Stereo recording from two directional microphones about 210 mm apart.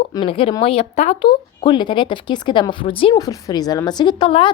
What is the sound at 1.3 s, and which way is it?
A woman's voice, 20° left (ahead or behind).